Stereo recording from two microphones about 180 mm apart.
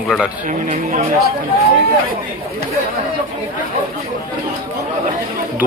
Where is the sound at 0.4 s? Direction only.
45° right (ahead or behind).